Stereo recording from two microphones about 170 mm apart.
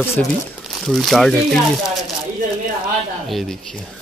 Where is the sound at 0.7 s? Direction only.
Centre (ahead or behind).